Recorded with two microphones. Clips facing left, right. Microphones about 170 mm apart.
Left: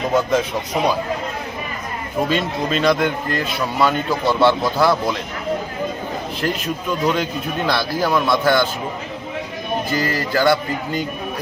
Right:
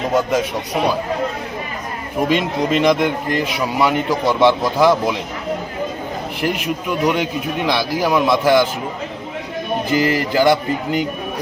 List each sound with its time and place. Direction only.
0.1 s speech: 10° right (ahead or behind)
2.3 s speech: 15° right (ahead or behind)
6.4 s speech: 15° right (ahead or behind)
9.9 s speech: 15° right (ahead or behind)